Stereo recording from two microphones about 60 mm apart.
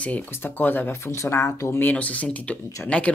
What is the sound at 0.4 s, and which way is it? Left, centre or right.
Speech, left.